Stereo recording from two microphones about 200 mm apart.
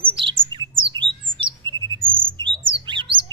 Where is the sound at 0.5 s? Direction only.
25° right (ahead or behind).